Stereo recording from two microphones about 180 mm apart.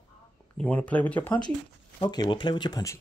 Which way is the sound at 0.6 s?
5° left (ahead or behind).